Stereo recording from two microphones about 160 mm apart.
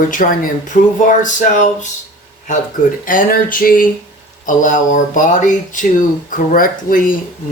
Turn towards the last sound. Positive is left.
turn(degrees=60)  # may be behind; listen again after turning